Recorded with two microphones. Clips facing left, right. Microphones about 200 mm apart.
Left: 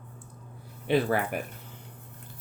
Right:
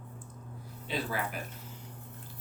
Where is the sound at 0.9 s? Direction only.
60° left (ahead or behind).